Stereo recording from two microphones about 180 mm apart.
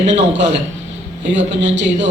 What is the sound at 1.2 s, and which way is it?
Speech, 85° right.